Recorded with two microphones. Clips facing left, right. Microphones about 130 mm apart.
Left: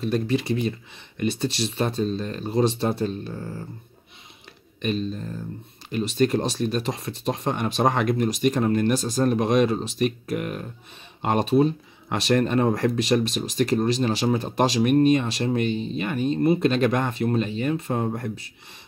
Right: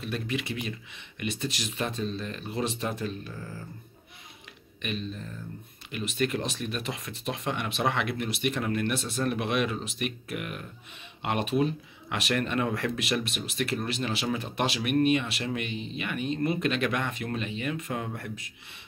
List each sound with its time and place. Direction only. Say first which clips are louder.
0.0 s speech: left 9 dB; 35° left (ahead or behind)
4.8 s speech: left 8 dB; 35° left (ahead or behind)